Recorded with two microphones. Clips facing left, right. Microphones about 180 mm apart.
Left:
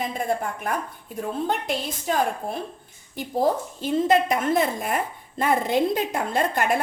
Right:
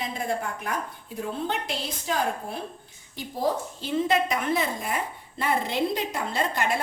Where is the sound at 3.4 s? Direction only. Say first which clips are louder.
Left 4 dB; 45° left (ahead or behind).